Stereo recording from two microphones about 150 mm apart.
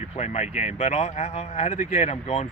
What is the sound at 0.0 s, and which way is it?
Speech, 50° left (ahead or behind).